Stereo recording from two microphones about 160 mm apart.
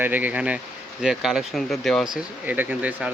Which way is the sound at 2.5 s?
10° right (ahead or behind).